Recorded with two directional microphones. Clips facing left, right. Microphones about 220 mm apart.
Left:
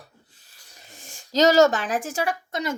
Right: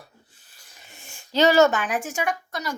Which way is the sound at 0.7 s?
35° left (ahead or behind).